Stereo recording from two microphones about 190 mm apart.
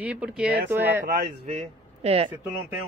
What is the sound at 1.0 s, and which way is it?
Speech, 45° right (ahead or behind).